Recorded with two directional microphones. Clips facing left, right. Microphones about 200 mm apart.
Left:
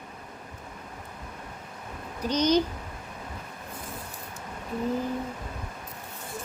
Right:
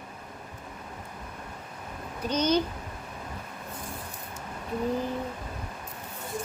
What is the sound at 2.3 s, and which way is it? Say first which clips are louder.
Child singing: left 2 dB; 10° left (ahead or behind).